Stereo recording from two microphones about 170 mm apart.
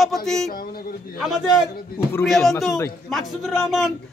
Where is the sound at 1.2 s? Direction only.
Centre (ahead or behind).